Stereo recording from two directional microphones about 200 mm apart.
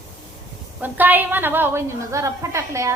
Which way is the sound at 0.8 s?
10° right (ahead or behind).